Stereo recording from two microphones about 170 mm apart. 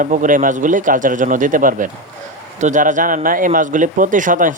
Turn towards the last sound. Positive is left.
turn(degrees=-50)  # may be behind; listen again after turning